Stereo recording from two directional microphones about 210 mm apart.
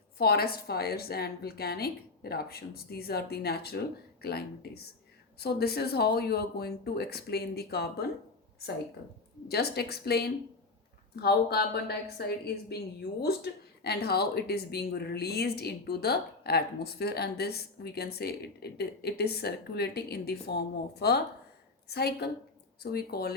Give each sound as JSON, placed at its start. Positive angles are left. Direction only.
{"t": 0.2, "sound": "a woman's voice", "side_deg": 45}
{"t": 9.5, "sound": "a woman's voice", "side_deg": 50}